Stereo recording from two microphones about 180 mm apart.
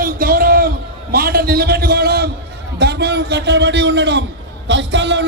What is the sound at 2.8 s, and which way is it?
A man's voice, 65° right (ahead or behind).